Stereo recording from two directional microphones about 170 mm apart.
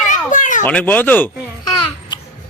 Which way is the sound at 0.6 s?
10° left (ahead or behind).